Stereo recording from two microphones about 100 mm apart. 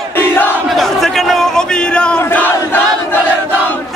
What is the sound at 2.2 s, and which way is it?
Battle cry, 20° left (ahead or behind).